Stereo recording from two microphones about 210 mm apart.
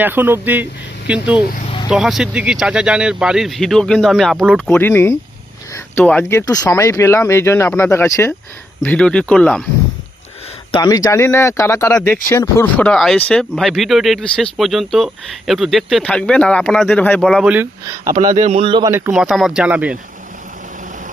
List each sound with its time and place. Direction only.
0.0 s speech: 10° right (ahead or behind)
1.6 s vehicle: 25° left (ahead or behind)
1.9 s speech: centre (ahead or behind)
4.7 s speech: 10° left (ahead or behind)
10.7 s speech: 20° left (ahead or behind); by 18.1 s 10° right (ahead or behind)
18.1 s a man's voice: 35° right (ahead or behind); by 19.1 s 15° right (ahead or behind)
19.1 s speech: centre (ahead or behind)